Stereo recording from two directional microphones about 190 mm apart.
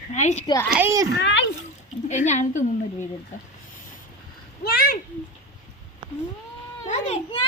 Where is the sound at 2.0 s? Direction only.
40° left (ahead or behind).